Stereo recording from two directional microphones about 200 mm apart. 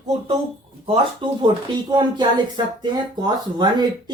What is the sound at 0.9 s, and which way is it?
Speech, 25° right (ahead or behind).